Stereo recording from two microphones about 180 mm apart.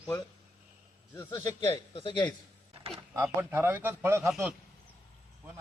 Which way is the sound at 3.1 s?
15° right (ahead or behind).